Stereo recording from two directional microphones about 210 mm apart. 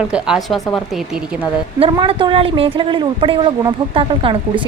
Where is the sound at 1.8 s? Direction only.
25° right (ahead or behind).